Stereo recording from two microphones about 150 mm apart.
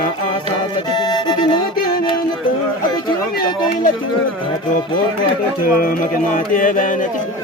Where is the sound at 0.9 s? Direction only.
30° left (ahead or behind).